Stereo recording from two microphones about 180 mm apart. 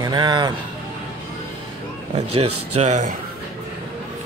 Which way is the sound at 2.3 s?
35° right (ahead or behind).